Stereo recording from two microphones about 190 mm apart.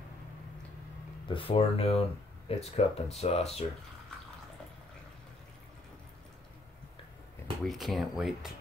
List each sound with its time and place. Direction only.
1.3 s speech: 30° left (ahead or behind)
7.6 s speech: centre (ahead or behind)